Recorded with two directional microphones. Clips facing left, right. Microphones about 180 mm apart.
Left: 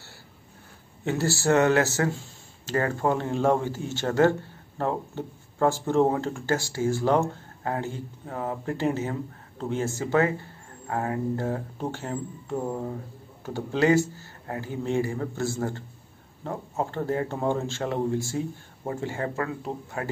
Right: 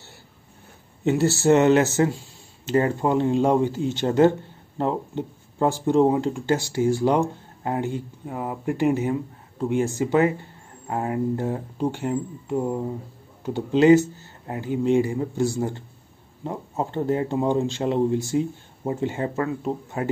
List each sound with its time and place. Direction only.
1.0 s speech: 20° right (ahead or behind)